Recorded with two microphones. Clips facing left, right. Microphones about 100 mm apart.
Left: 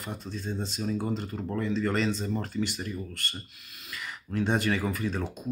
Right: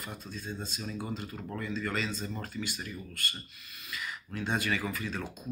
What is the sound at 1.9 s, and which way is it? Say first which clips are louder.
Speech: left 7 dB; 60° left (ahead or behind).